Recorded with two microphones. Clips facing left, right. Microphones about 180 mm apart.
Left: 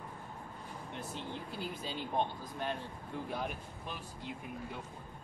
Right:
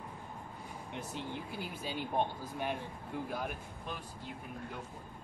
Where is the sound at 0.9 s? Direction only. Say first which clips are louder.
Right 2 dB; 15° right (ahead or behind).